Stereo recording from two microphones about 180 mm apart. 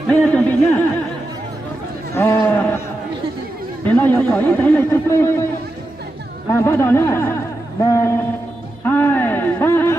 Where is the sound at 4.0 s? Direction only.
10° left (ahead or behind).